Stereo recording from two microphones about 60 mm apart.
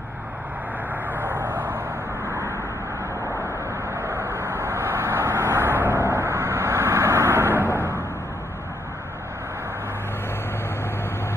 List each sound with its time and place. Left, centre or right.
1.1 s vehicle: right
2.2 s vehicle: right
3.9 s vehicle: right
7.6 s a sound: left